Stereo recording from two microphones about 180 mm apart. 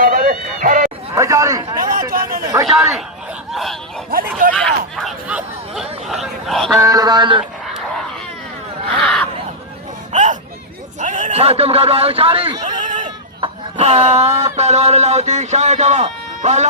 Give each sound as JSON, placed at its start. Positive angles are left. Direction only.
{"t": 0.0, "sound": "run", "side_deg": -50}
{"t": 1.1, "sound": "a sound", "side_deg": -15}
{"t": 2.5, "sound": "a man's voice", "side_deg": -15}
{"t": 3.5, "sound": "speech", "side_deg": 0}
{"t": 4.5, "sound": "chatter", "side_deg": 5}
{"t": 6.7, "sound": "speech", "side_deg": -20}
{"t": 8.9, "sound": "a sound", "side_deg": 5}
{"t": 10.1, "sound": "a sound", "side_deg": -40}
{"t": 11.0, "sound": "a man's voice", "side_deg": -45}
{"t": 12.8, "sound": "sheep", "side_deg": -45}
{"t": 13.4, "sound": "speech", "side_deg": -35}